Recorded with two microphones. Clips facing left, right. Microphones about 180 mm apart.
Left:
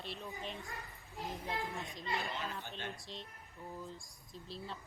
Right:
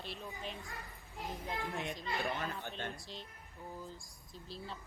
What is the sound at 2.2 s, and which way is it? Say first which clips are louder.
Speech: right 3 dB; 55° right (ahead or behind).